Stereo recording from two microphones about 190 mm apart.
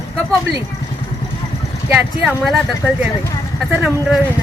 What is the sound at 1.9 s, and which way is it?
Speech, centre (ahead or behind).